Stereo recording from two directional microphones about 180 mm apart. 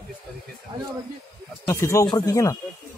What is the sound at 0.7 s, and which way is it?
Speech, 25° right (ahead or behind).